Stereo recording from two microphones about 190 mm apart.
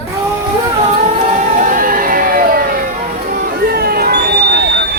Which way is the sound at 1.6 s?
45° right (ahead or behind).